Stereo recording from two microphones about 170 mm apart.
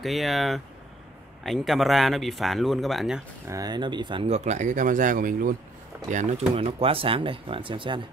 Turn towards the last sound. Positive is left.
turn(degrees=-30)  # may be behind; listen again after turning